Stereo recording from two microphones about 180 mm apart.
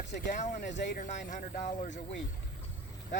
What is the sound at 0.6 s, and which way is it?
Speech, 70° left (ahead or behind).